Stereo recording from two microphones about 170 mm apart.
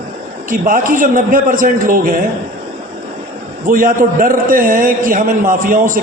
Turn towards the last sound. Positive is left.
turn(degrees=-55)  # may be behind; listen again after turning